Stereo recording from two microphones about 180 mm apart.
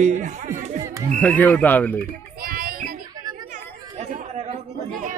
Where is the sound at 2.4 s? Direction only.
50° right (ahead or behind).